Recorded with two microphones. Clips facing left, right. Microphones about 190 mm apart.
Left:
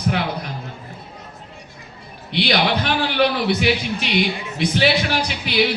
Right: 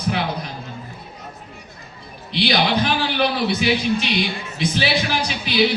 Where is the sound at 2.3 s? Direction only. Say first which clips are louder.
Even; 60° left (ahead or behind).